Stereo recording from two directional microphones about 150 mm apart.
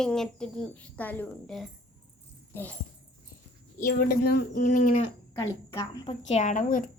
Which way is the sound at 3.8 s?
70° left (ahead or behind).